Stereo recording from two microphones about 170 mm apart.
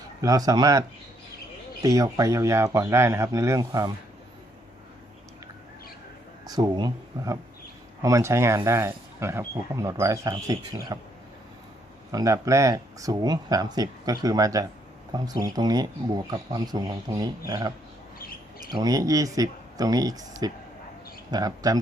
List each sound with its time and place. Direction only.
0.2 s speech: 20° right (ahead or behind)
6.5 s speech: 25° right (ahead or behind)
12.1 s speech: 20° right (ahead or behind)
18.7 s speech: 25° right (ahead or behind)